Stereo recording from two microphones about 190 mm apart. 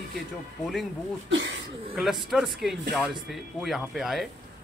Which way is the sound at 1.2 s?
80° right.